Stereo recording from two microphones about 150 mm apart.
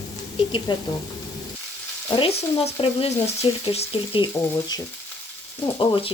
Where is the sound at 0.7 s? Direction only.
30° left (ahead or behind).